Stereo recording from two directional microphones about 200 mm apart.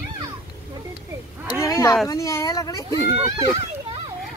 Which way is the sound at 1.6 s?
15° left (ahead or behind).